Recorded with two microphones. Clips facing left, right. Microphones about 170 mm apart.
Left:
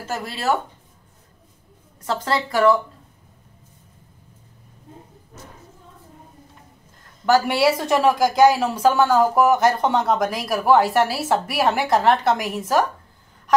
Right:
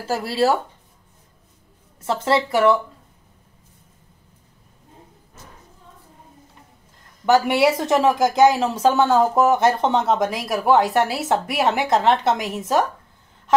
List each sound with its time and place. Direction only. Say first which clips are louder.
0.1 s speech: right 4 dB; 35° right (ahead or behind)
2.0 s speech: right 3 dB; 25° right (ahead or behind)
7.2 s speech: right 1 dB; 20° right (ahead or behind)
13.5 s honk: right 1 dB; 25° right (ahead or behind)